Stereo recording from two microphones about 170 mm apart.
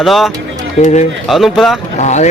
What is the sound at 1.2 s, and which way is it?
Speech, centre (ahead or behind).